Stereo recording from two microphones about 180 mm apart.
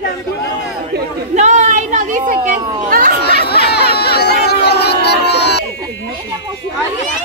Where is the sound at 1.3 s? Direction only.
40° right (ahead or behind).